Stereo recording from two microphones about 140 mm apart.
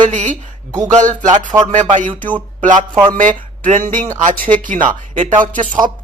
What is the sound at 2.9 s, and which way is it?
Speech, 30° right (ahead or behind).